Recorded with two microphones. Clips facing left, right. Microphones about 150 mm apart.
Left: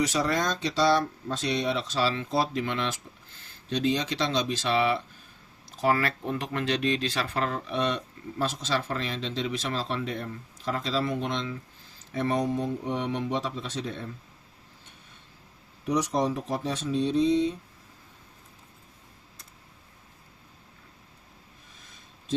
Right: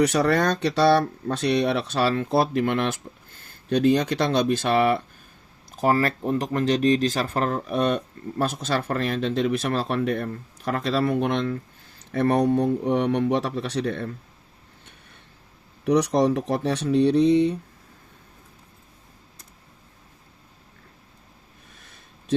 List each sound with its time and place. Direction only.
0.0 s speech: 60° right (ahead or behind)
5.7 s speech: 45° right (ahead or behind); by 14.1 s 65° right (ahead or behind)
15.9 s speech: 70° right (ahead or behind)
21.8 s a sound: 65° right (ahead or behind)